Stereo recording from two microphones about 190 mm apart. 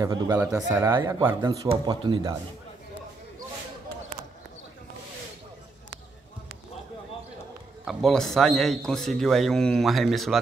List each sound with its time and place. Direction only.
0.0 s speech: 15° right (ahead or behind)
7.8 s a man's voice: centre (ahead or behind)